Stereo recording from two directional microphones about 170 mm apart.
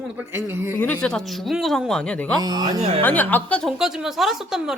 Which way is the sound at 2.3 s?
25° right (ahead or behind).